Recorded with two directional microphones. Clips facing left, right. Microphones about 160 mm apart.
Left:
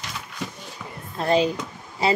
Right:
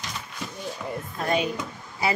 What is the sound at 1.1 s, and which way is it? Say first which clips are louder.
Speech: left 6 dB; 30° left (ahead or behind).